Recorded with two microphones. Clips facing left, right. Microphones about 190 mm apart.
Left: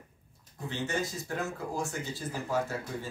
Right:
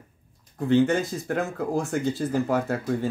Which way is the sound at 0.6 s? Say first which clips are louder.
Right 13 dB; 55° right (ahead or behind).